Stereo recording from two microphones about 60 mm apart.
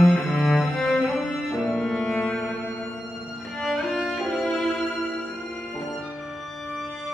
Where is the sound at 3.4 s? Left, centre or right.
Centre.